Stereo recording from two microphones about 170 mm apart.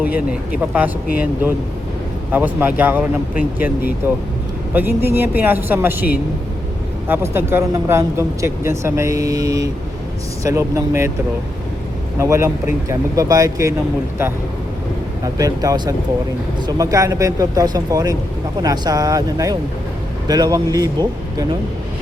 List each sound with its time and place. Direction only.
0.0 s speech: 10° right (ahead or behind)
4.0 s speech: 10° right (ahead or behind)
7.1 s speech: 15° right (ahead or behind)
12.2 s speech: 15° right (ahead or behind)
15.2 s speech: 20° right (ahead or behind)